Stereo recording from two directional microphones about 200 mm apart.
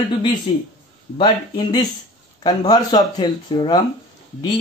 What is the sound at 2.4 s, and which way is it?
A man's voice, 20° left (ahead or behind).